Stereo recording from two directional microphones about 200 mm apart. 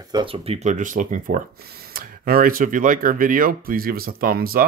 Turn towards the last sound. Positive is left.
turn(degrees=-45)  # may be behind; listen again after turning